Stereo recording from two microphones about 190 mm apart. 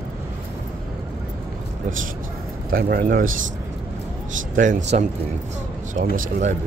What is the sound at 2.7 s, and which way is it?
Speech, 50° right (ahead or behind).